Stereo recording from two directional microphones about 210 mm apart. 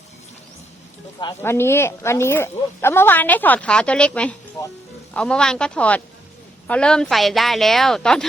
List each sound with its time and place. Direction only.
1.2 s speech: 15° left (ahead or behind)